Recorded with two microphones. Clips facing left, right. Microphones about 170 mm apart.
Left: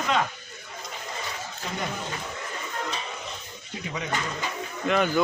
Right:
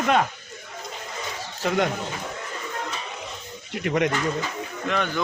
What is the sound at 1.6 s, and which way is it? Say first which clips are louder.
Speech: right 12 dB; 90° right.